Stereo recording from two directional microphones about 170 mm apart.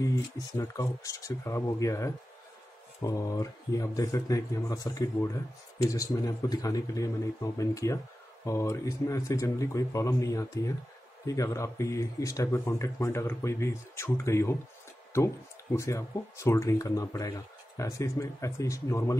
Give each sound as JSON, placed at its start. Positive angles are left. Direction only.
{"t": 0.0, "sound": "speech", "side_deg": 20}